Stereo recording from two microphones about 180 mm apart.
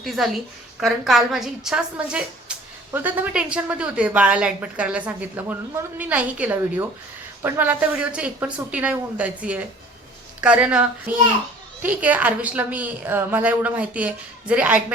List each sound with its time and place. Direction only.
0.0 s a woman's voice: centre (ahead or behind)